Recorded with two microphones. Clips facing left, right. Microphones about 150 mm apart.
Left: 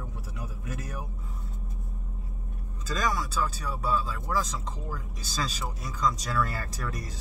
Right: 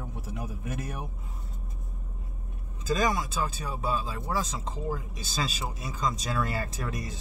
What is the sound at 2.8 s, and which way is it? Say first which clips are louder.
Speech: right 3 dB; 20° right (ahead or behind).